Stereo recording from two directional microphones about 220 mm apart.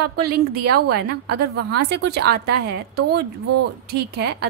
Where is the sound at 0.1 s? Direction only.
45° right (ahead or behind).